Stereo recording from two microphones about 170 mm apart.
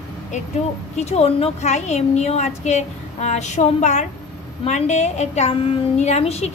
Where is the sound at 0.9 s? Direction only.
40° left (ahead or behind).